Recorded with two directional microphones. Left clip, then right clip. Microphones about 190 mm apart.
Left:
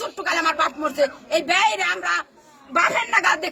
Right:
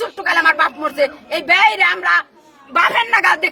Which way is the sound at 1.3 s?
20° right (ahead or behind).